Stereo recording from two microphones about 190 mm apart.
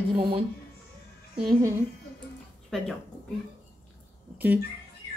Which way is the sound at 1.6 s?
15° right (ahead or behind).